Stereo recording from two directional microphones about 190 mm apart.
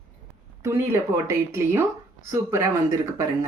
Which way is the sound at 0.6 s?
15° right (ahead or behind).